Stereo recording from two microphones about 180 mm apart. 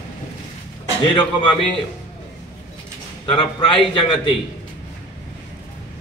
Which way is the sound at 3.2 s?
30° left (ahead or behind).